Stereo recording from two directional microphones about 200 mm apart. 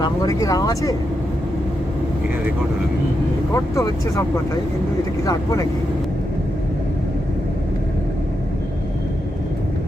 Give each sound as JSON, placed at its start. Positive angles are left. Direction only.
{"t": 0.0, "sound": "speech", "side_deg": 20}
{"t": 3.5, "sound": "speech", "side_deg": 15}